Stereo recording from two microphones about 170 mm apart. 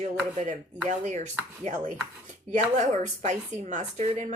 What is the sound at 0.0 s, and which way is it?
A woman's voice, 40° right (ahead or behind).